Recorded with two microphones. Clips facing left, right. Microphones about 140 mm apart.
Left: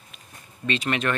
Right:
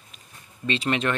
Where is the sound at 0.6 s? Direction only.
25° right (ahead or behind).